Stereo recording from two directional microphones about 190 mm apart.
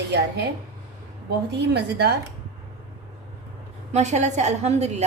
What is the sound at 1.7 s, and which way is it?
Speech, 60° right (ahead or behind).